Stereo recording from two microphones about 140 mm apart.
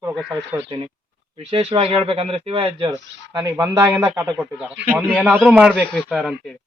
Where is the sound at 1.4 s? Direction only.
45° right (ahead or behind).